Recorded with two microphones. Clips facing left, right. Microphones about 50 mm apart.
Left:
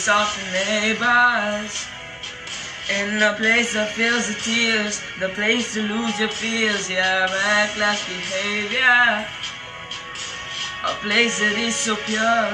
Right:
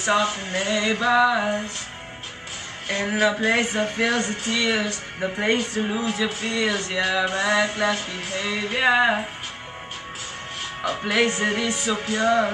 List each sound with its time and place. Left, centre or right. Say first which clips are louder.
0.0 s speech: left 2 dB; left
2.9 s speech: left 2 dB; left
11.1 s speech: left 2 dB; left